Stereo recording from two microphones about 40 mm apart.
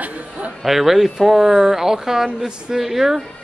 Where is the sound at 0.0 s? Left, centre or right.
Right.